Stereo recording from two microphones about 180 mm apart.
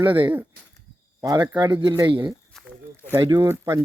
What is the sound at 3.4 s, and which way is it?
Speech, 15° right (ahead or behind).